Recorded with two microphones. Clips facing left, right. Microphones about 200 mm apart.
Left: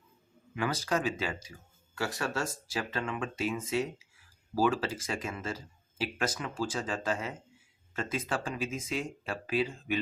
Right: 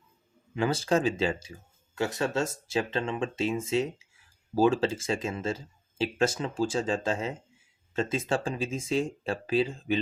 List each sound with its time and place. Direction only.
0.5 s speech: 25° right (ahead or behind)